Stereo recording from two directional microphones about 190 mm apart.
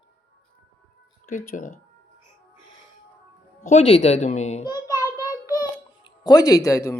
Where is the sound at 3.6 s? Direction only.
40° left (ahead or behind).